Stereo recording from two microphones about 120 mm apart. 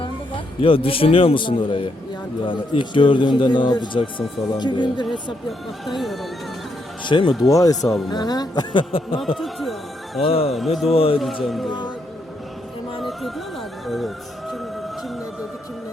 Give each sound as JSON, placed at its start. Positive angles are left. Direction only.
{"t": 0.0, "sound": "a man's voice", "side_deg": 45}
{"t": 5.5, "sound": "speech", "side_deg": 0}
{"t": 7.0, "sound": "a man's voice", "side_deg": 40}
{"t": 7.5, "sound": "a man's voice", "side_deg": 30}
{"t": 9.2, "sound": "speech", "side_deg": 0}
{"t": 10.2, "sound": "a man's voice", "side_deg": 55}
{"t": 10.5, "sound": "speech", "side_deg": 0}
{"t": 10.9, "sound": "a man's voice", "side_deg": 50}
{"t": 11.4, "sound": "speech", "side_deg": 0}
{"t": 13.0, "sound": "music", "side_deg": 0}